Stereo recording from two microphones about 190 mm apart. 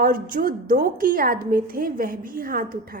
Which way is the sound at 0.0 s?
45° right (ahead or behind).